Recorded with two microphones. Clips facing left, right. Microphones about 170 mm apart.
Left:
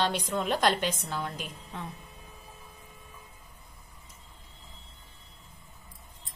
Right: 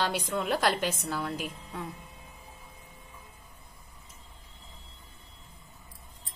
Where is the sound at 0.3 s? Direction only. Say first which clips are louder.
Even; 5° right (ahead or behind).